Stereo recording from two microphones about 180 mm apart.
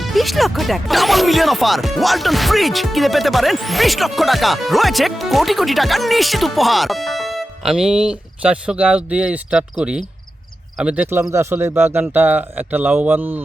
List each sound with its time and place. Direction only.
0.0 s speech: centre (ahead or behind)